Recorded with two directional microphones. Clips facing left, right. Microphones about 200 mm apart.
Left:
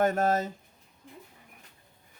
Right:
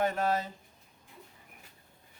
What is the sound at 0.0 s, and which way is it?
Speech, 45° left (ahead or behind).